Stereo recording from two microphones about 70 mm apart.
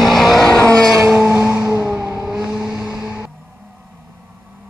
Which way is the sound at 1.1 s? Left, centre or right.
Right.